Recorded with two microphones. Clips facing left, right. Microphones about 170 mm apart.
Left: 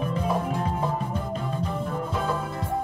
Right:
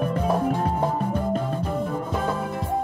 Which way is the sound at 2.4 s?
20° right (ahead or behind).